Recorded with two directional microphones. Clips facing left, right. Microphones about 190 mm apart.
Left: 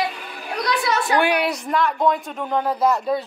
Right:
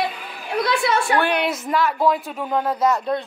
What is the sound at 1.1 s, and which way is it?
Speech, 10° left (ahead or behind).